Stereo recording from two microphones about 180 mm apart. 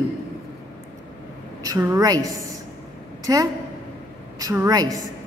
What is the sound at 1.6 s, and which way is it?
A woman's voice, 15° right (ahead or behind).